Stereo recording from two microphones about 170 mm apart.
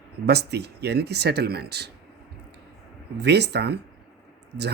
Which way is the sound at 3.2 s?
80° right.